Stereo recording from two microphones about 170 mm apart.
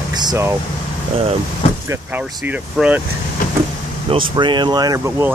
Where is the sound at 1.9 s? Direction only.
10° right (ahead or behind).